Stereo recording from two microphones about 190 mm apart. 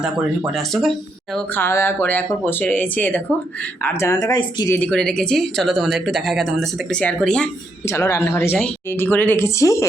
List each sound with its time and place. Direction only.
0.5 s speech: centre (ahead or behind); by 4.7 s 20° left (ahead or behind)
4.7 s speech: 5° left (ahead or behind)